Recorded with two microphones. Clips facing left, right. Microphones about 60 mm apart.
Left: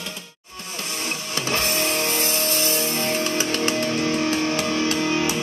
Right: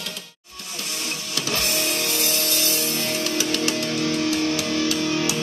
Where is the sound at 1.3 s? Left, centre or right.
Left.